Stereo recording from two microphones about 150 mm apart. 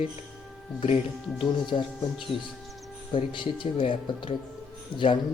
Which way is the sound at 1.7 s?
40° left (ahead or behind).